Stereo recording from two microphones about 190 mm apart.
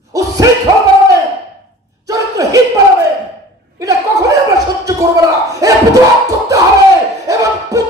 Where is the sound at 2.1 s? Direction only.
20° right (ahead or behind).